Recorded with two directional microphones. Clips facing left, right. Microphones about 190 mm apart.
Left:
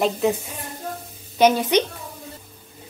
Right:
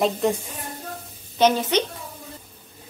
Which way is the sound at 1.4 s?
10° left (ahead or behind).